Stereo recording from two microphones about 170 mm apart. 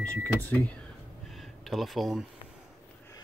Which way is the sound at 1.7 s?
Centre (ahead or behind).